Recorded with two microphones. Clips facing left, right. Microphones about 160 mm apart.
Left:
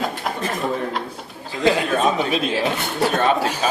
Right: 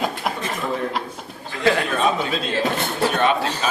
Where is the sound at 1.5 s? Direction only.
20° left (ahead or behind).